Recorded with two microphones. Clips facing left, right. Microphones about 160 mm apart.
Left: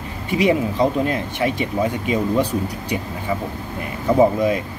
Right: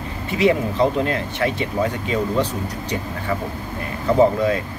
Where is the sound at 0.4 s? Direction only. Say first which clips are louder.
Even; 15° left (ahead or behind).